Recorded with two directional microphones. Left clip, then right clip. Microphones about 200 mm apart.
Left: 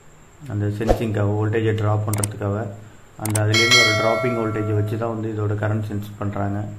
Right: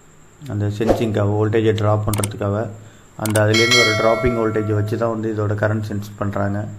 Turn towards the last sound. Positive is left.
turn(degrees=-20)  # may be behind; listen again after turning